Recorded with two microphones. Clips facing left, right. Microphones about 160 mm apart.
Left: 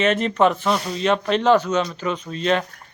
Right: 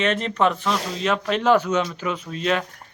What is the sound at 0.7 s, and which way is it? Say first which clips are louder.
Speech: left 3 dB; 90° right.